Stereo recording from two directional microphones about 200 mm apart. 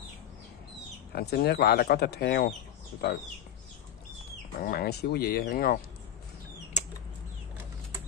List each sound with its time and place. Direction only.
1.1 s speech: 50° left (ahead or behind)
4.6 s speech: 50° left (ahead or behind)
6.8 s a sound: 35° left (ahead or behind)